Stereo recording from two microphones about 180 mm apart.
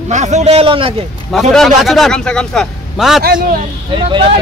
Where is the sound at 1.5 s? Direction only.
Centre (ahead or behind).